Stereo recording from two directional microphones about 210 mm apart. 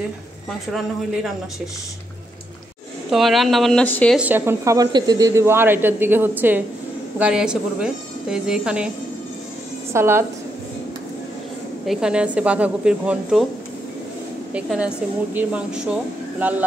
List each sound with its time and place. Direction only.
0.7 s a woman's voice: centre (ahead or behind)
3.1 s a woman's voice: centre (ahead or behind)
4.2 s a woman's voice: 10° right (ahead or behind)
9.9 s speech: 10° right (ahead or behind)
11.8 s a woman's voice: centre (ahead or behind)
14.5 s a woman's voice: 5° right (ahead or behind)